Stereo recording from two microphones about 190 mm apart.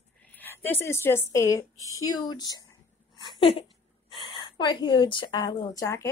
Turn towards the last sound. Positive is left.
turn(degrees=15)  # may be behind; listen again after turning